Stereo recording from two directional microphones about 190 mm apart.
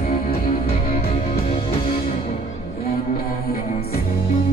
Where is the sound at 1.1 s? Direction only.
35° left (ahead or behind).